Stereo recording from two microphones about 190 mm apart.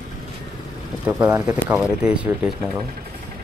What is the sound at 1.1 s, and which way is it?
Speech, 10° right (ahead or behind).